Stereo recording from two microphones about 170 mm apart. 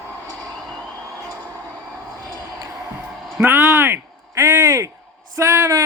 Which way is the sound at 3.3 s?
10° right (ahead or behind).